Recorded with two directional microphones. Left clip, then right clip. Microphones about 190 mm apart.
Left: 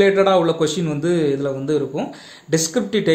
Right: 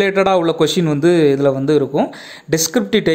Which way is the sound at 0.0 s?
50° right (ahead or behind).